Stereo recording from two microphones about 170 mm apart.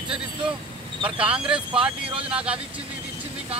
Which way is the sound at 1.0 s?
30° right (ahead or behind).